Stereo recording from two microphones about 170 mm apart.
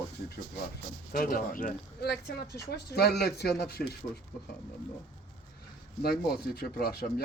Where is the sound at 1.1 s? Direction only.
60° left (ahead or behind).